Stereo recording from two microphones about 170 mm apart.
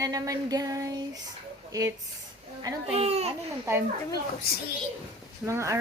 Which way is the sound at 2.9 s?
35° right (ahead or behind).